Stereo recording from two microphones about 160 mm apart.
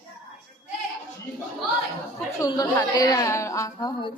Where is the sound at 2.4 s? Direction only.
20° left (ahead or behind).